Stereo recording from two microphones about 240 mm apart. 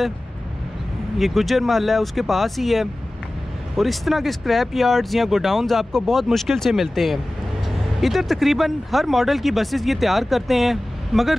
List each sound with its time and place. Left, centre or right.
1.1 s speech: centre